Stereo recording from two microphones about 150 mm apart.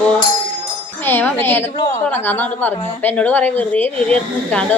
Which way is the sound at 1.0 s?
15° left (ahead or behind).